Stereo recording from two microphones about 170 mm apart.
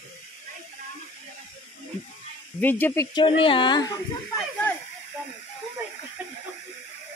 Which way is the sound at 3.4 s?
30° left (ahead or behind).